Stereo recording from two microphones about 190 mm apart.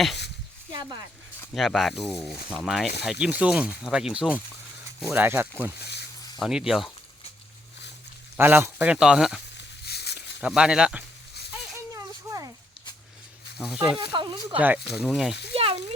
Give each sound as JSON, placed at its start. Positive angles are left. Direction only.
{"t": 0.7, "sound": "a sound", "side_deg": -25}
{"t": 1.5, "sound": "speech", "side_deg": 0}
{"t": 2.1, "sound": "speech", "side_deg": 10}
{"t": 2.5, "sound": "speech", "side_deg": 0}
{"t": 5.8, "sound": "a sound", "side_deg": 60}
{"t": 6.4, "sound": "speech", "side_deg": -5}
{"t": 8.4, "sound": "speech", "side_deg": -10}
{"t": 9.6, "sound": "a sound", "side_deg": 60}
{"t": 10.4, "sound": "speech", "side_deg": -5}
{"t": 11.9, "sound": "a sound", "side_deg": -15}
{"t": 13.6, "sound": "speech", "side_deg": -5}
{"t": 14.1, "sound": "speech", "side_deg": -25}
{"t": 14.9, "sound": "speech", "side_deg": -5}
{"t": 15.5, "sound": "speech", "side_deg": -30}